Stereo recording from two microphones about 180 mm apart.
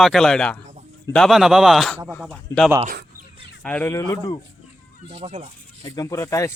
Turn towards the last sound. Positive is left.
turn(degrees=15)  # may be behind; listen again after turning